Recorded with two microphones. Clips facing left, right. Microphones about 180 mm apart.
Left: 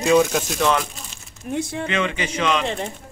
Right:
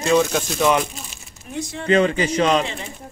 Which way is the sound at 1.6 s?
55° left (ahead or behind).